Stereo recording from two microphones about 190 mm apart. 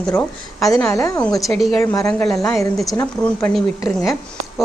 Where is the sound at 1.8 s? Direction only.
15° left (ahead or behind).